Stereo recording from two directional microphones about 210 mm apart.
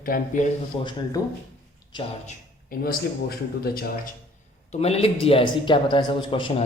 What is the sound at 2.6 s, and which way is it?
Speech, 45° left (ahead or behind).